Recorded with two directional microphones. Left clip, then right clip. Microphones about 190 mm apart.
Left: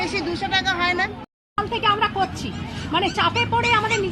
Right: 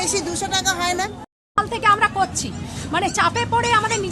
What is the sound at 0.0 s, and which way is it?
Speech, 20° right (ahead or behind).